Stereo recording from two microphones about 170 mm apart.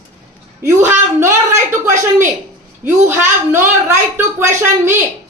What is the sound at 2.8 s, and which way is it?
A woman's voice, 10° right (ahead or behind).